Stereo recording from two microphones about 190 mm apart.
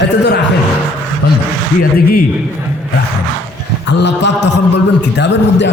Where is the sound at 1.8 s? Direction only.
50° left (ahead or behind).